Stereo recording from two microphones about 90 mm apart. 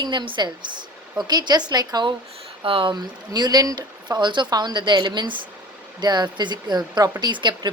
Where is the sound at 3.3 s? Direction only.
50° right (ahead or behind).